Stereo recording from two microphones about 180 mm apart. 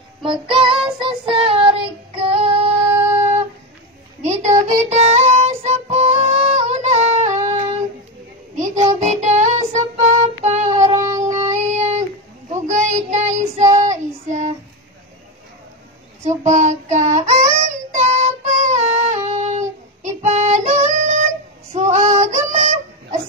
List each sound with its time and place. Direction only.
0.2 s child singing: 30° right (ahead or behind)
4.2 s music: 40° right (ahead or behind)
8.5 s child singing: 40° right (ahead or behind)
16.3 s child singing: 40° right (ahead or behind)